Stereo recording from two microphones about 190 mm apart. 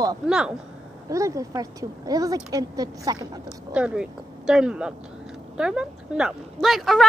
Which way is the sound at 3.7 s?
5° right (ahead or behind).